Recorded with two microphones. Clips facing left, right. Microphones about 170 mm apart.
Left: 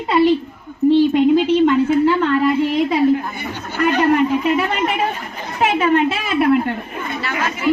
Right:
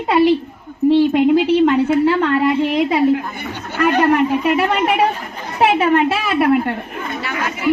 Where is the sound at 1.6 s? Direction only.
70° right (ahead or behind).